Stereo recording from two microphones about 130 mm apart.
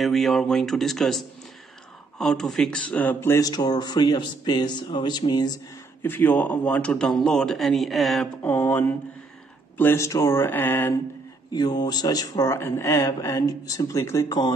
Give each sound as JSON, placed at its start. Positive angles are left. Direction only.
{"t": 0.0, "sound": "a man's voice", "side_deg": 0}
{"t": 6.0, "sound": "a man's voice", "side_deg": 15}
{"t": 8.4, "sound": "mantra", "side_deg": 15}
{"t": 9.8, "sound": "speech", "side_deg": 20}
{"t": 11.5, "sound": "speech", "side_deg": 30}